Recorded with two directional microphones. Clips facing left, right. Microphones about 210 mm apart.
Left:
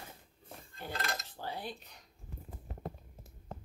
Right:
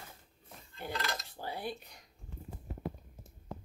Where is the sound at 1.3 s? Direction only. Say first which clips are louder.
Right 2 dB; 10° right (ahead or behind).